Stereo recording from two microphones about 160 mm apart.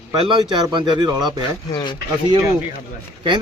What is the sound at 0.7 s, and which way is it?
Speech, 30° right (ahead or behind).